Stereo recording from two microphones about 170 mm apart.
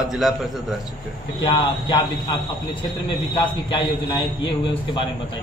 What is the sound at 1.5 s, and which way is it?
Speech, 30° left (ahead or behind).